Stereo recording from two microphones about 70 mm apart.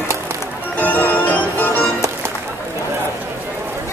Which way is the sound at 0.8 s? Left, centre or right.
Left.